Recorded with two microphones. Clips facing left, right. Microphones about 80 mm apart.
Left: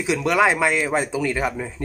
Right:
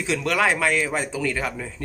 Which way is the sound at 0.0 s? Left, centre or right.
Centre.